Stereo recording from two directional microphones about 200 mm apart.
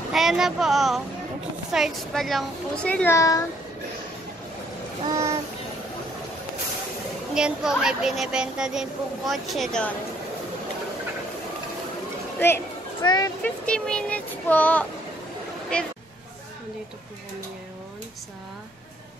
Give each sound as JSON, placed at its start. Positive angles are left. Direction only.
{"t": 0.1, "sound": "speech", "side_deg": 0}
{"t": 5.0, "sound": "child singing", "side_deg": -15}
{"t": 7.3, "sound": "speech", "side_deg": -5}
{"t": 12.4, "sound": "speech", "side_deg": 10}
{"t": 13.4, "sound": "speech", "side_deg": 5}